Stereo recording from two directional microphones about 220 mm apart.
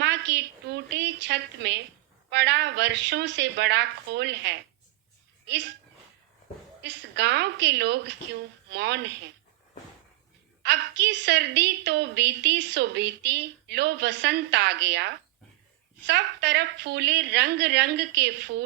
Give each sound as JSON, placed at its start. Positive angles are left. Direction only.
{"t": 0.0, "sound": "a sound", "side_deg": -50}
{"t": 2.3, "sound": "a woman's voice", "side_deg": -50}
{"t": 6.8, "sound": "a woman's voice", "side_deg": -55}
{"t": 10.6, "sound": "a woman's voice", "side_deg": -50}